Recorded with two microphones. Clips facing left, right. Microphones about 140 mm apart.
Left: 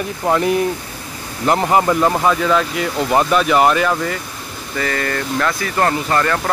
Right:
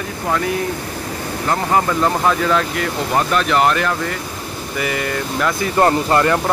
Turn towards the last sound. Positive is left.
turn(degrees=-20)  # may be behind; listen again after turning